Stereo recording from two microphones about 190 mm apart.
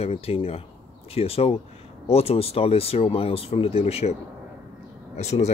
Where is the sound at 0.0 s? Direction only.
30° left (ahead or behind).